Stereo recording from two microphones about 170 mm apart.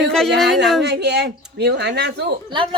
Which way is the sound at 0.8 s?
80° right.